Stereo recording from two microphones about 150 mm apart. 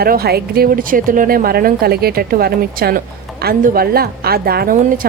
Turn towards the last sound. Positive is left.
turn(degrees=-65)  # may be behind; listen again after turning